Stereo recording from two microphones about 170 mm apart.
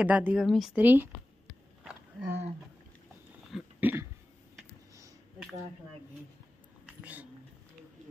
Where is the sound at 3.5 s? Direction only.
5° right (ahead or behind).